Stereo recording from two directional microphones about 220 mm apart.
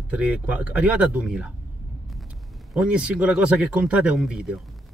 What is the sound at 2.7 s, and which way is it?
Speech, 5° right (ahead or behind).